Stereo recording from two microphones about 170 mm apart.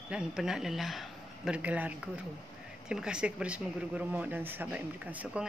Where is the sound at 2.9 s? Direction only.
5° right (ahead or behind).